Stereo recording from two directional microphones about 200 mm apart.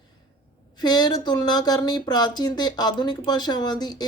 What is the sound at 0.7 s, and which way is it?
Speech, 20° left (ahead or behind).